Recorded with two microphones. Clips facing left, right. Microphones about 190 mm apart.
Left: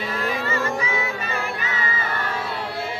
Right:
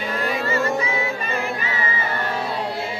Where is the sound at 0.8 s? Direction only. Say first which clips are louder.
Right 2 dB; 35° right (ahead or behind).